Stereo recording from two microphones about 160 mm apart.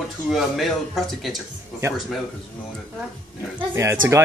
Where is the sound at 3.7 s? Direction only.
15° right (ahead or behind).